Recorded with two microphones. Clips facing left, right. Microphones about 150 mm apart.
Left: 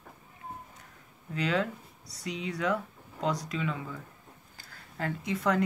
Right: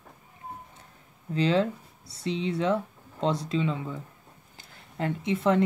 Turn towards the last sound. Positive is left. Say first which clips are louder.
# right 4 dB
turn(degrees=-25)  # may be behind; listen again after turning